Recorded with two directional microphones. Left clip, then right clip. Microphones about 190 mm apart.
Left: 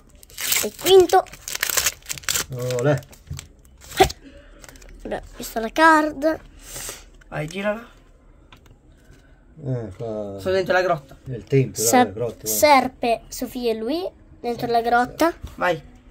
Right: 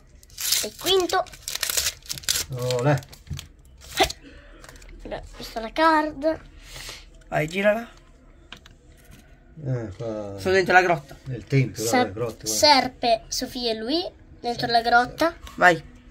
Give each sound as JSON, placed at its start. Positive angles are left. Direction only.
{"t": 0.4, "sound": "a child's voice", "side_deg": 40}
{"t": 1.3, "sound": "crumpling", "side_deg": 35}
{"t": 2.2, "sound": "speech", "side_deg": 30}
{"t": 3.9, "sound": "crunch", "side_deg": 40}
{"t": 5.0, "sound": "a child's voice", "side_deg": 45}
{"t": 7.2, "sound": "speech", "side_deg": -10}
{"t": 9.7, "sound": "speech", "side_deg": 30}
{"t": 10.4, "sound": "speech", "side_deg": -10}
{"t": 11.3, "sound": "speech", "side_deg": 25}
{"t": 11.7, "sound": "a woman's voice", "side_deg": 45}
{"t": 15.6, "sound": "speech", "side_deg": -20}